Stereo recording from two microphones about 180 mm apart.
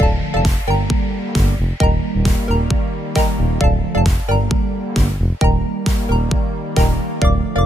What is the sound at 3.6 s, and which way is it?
Music, centre (ahead or behind).